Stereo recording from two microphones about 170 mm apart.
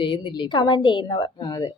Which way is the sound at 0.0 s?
30° left (ahead or behind).